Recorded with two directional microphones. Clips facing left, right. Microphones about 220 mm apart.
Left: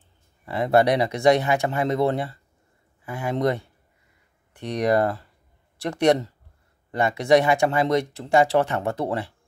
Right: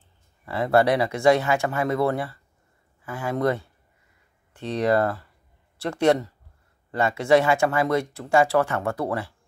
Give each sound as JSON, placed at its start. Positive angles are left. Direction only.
{"t": 0.5, "sound": "speech", "side_deg": 20}